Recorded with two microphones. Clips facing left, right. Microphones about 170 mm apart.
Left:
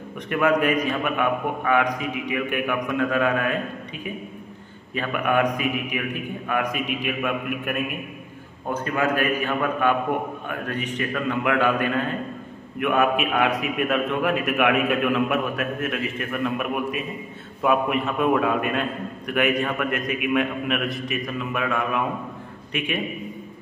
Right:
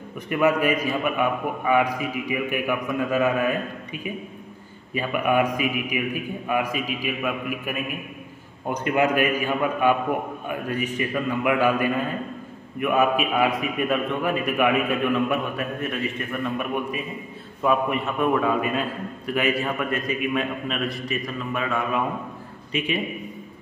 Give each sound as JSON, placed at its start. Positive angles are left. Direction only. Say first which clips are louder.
{"t": 0.3, "sound": "a man's voice", "louder": "even", "side_deg": -5}
{"t": 4.9, "sound": "a man's voice", "louder": "right 1 dB", "side_deg": -10}
{"t": 8.7, "sound": "a man's voice", "louder": "right 2 dB", "side_deg": -20}
{"t": 19.9, "sound": "a man's voice", "louder": "even", "side_deg": 70}
{"t": 20.3, "sound": "a man's voice", "louder": "left 3 dB", "side_deg": 5}
{"t": 22.7, "sound": "a man's voice", "louder": "right 2 dB", "side_deg": 60}